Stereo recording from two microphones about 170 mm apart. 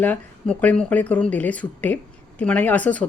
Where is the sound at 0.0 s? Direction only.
10° left (ahead or behind).